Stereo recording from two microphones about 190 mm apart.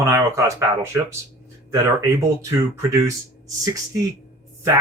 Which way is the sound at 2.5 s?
15° right (ahead or behind).